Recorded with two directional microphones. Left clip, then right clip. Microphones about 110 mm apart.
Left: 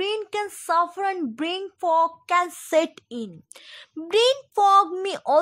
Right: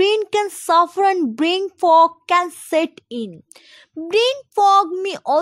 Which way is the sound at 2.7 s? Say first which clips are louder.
Right 2 dB; 20° right (ahead or behind).